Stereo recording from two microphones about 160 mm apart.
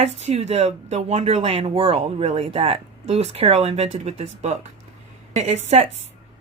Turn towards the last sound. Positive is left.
turn(degrees=-45)  # may be behind; listen again after turning